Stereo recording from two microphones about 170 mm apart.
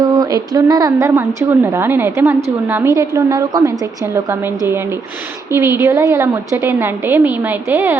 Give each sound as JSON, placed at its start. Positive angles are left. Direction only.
{"t": 0.0, "sound": "a woman's voice", "side_deg": -20}